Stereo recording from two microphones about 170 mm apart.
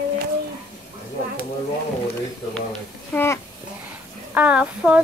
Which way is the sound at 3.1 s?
15° left (ahead or behind).